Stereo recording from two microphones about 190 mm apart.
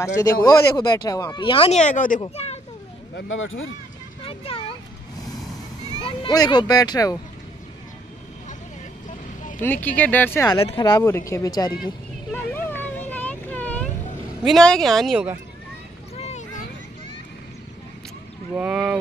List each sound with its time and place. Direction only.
0.0 s speech: 15° left (ahead or behind); by 2.2 s 45° left (ahead or behind)
2.2 s speech: 30° left (ahead or behind)
3.2 s speech: 90° left
4.3 s speech: 30° left (ahead or behind)
5.9 s speech: 25° left (ahead or behind)
9.6 s speech: 10° left (ahead or behind)
10.5 s speech: 25° left (ahead or behind)
12.3 s vehicle: 10° left (ahead or behind)
14.4 s speech: centre (ahead or behind)
16.2 s a sound: 35° left (ahead or behind)
18.5 s speech: 5° right (ahead or behind)